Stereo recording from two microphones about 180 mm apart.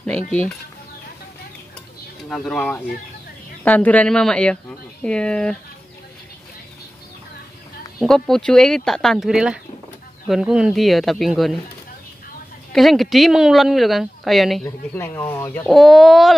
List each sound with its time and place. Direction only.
2.2 s speech: 5° left (ahead or behind)
8.0 s speech: centre (ahead or behind)
12.7 s speech: centre (ahead or behind)
14.6 s speech: 10° left (ahead or behind)
15.6 s speech: centre (ahead or behind)